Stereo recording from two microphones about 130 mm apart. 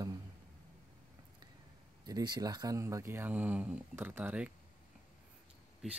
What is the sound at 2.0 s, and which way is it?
Speech, 30° right (ahead or behind).